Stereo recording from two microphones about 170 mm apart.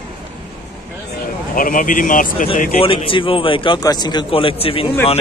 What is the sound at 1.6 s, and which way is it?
Speech, 55° left (ahead or behind).